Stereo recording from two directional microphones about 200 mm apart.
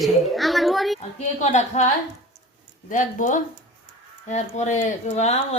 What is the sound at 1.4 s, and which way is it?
Speech, 35° left (ahead or behind).